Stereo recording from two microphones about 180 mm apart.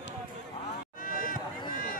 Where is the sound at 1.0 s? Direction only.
50° left (ahead or behind).